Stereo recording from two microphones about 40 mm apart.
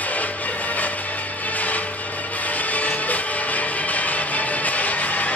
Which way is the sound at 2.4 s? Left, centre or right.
Left.